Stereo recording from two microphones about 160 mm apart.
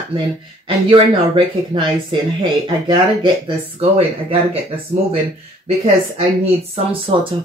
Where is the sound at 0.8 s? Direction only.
35° right (ahead or behind).